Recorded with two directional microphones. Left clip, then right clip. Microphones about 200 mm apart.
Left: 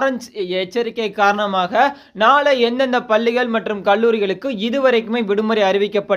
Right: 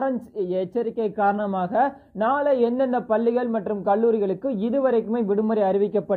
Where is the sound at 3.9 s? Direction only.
10° left (ahead or behind).